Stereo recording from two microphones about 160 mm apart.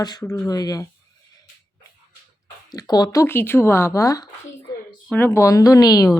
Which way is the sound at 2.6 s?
25° left (ahead or behind).